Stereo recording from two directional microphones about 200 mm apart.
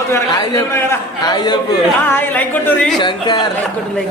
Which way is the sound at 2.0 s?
10° left (ahead or behind).